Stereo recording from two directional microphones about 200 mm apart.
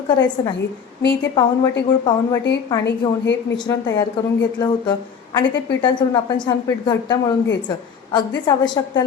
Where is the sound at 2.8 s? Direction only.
60° left (ahead or behind).